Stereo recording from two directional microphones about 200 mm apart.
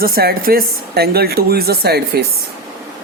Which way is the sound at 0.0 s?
50° right (ahead or behind).